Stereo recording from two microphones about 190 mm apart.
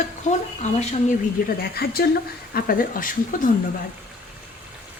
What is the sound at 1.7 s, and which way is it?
A woman's voice, 55° left (ahead or behind).